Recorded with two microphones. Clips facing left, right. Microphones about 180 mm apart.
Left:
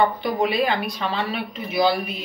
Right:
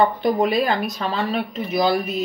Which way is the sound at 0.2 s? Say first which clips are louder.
Right 3 dB; 45° right (ahead or behind).